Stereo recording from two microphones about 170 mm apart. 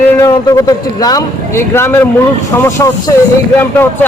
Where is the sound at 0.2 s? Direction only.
20° left (ahead or behind).